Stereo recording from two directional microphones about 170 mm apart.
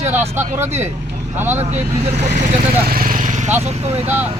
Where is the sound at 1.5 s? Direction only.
40° right (ahead or behind).